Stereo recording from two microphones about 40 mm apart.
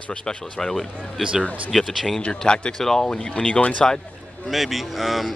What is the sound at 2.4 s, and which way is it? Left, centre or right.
Speech, centre.